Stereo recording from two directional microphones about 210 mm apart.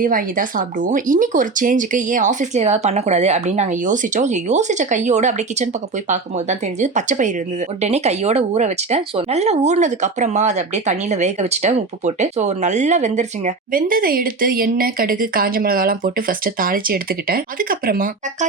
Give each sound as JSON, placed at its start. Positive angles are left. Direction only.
{"t": 0.0, "sound": "speech", "side_deg": -40}